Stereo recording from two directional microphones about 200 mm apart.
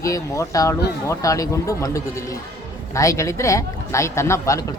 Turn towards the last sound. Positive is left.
turn(degrees=15)  # may be behind; listen again after turning